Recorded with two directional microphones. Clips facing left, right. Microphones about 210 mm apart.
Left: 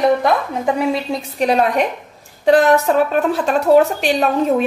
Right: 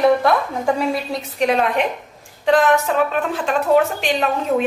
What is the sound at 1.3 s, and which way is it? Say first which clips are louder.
A woman's voice: left 2 dB; 40° left (ahead or behind).